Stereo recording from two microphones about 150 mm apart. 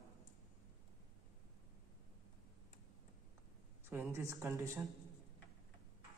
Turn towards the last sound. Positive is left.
turn(degrees=-15)  # may be behind; listen again after turning